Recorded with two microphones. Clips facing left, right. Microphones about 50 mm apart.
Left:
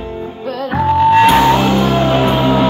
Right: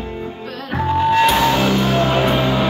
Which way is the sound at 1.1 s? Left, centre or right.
Left.